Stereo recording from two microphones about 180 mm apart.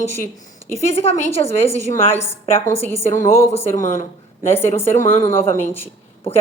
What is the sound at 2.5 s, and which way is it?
Speech, 35° left (ahead or behind).